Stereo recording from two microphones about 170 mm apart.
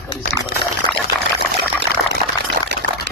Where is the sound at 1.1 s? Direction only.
25° right (ahead or behind).